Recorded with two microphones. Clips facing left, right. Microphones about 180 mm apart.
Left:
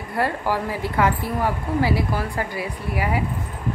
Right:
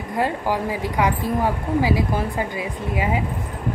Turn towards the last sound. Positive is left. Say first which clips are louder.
# right 2 dB
turn(degrees=-20)  # may be behind; listen again after turning